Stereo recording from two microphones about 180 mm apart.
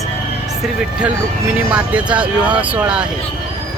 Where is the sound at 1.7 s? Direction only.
5° right (ahead or behind).